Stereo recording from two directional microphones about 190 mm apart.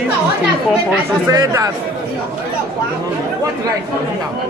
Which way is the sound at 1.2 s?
15° right (ahead or behind).